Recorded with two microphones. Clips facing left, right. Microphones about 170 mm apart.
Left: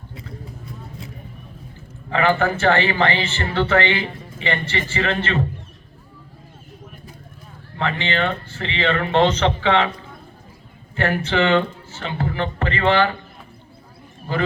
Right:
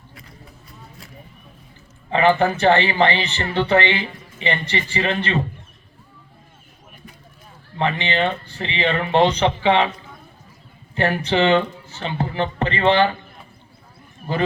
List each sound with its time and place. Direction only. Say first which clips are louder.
2.0 s a man's voice: right 2 dB; 20° right (ahead or behind)
7.8 s speech: right 1 dB; 20° right (ahead or behind)
10.9 s a man's voice: right 1 dB; 20° right (ahead or behind)